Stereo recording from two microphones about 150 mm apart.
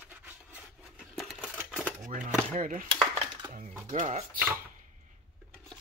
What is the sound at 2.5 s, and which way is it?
Speech, 60° right (ahead or behind).